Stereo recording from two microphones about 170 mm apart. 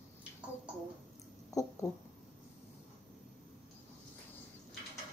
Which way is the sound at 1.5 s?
20° left (ahead or behind).